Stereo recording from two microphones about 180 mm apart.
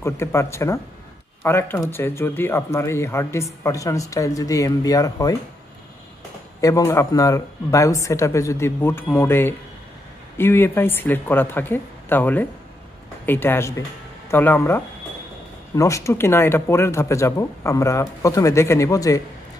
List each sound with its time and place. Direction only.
0.0 s speech: 15° left (ahead or behind)
6.6 s speech: 20° left (ahead or behind)